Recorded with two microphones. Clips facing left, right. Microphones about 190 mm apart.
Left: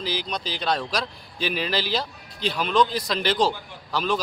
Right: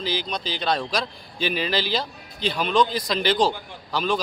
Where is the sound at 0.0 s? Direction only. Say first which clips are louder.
Right 1 dB; 5° left (ahead or behind).